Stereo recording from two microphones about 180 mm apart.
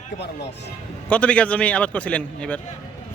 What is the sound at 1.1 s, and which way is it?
A man's voice, 5° left (ahead or behind).